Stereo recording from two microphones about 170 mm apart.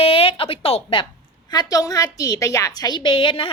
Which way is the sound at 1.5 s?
20° left (ahead or behind).